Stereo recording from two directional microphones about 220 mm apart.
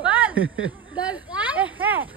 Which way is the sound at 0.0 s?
5° right (ahead or behind).